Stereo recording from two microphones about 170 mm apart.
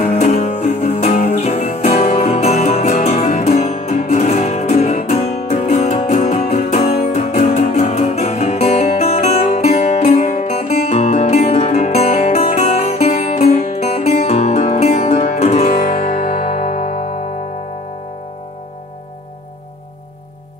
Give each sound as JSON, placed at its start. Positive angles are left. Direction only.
{"t": 0.0, "sound": "music", "side_deg": 40}